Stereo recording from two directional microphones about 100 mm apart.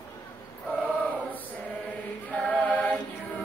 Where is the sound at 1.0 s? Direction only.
15° left (ahead or behind).